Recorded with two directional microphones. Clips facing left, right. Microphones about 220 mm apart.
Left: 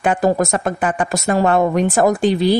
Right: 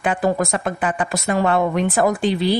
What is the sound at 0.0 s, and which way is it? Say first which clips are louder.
Speech: left 3 dB; 45° left (ahead or behind).